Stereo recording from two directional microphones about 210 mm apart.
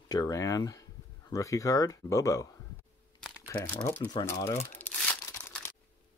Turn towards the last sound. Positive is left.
turn(degrees=5)  # may be behind; listen again after turning